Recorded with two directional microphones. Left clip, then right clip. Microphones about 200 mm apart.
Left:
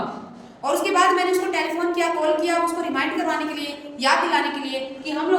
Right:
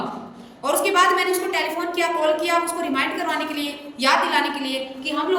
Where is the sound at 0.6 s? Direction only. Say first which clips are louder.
Right 1 dB; 15° left (ahead or behind).